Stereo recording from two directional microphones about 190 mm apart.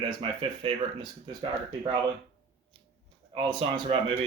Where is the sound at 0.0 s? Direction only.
30° right (ahead or behind).